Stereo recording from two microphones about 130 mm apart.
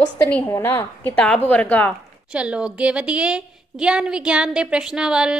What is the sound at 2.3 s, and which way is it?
A woman's voice, 10° right (ahead or behind).